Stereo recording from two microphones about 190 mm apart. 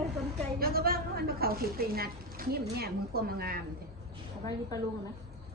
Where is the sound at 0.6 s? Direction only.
50° right (ahead or behind).